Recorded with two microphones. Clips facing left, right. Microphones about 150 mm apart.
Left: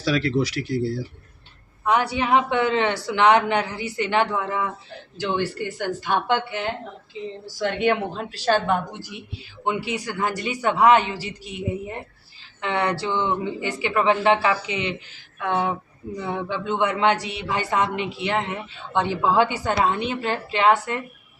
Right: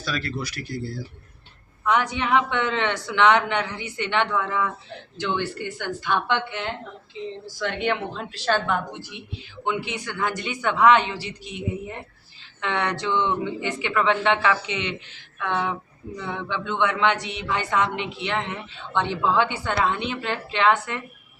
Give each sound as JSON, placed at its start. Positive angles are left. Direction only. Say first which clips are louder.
{"t": 0.0, "sound": "speech", "louder": "left 8 dB", "side_deg": 80}
{"t": 1.8, "sound": "a man's voice", "louder": "left 2 dB", "side_deg": 35}
{"t": 7.9, "sound": "a man's voice", "louder": "left 5 dB", "side_deg": 40}
{"t": 17.9, "sound": "a woman's voice", "louder": "left 3 dB", "side_deg": 10}
{"t": 18.3, "sound": "a man's voice", "louder": "left 3 dB", "side_deg": 40}